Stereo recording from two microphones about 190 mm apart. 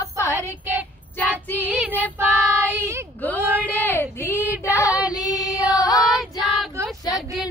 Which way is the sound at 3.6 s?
10° left (ahead or behind).